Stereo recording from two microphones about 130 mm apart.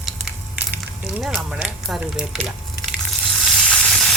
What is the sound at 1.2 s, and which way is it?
Speech, 5° right (ahead or behind).